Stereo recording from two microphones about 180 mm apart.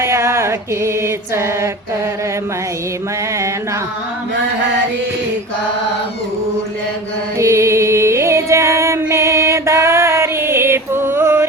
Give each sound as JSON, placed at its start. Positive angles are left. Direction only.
{"t": 0.0, "sound": "mantra", "side_deg": -15}
{"t": 7.3, "sound": "music", "side_deg": -15}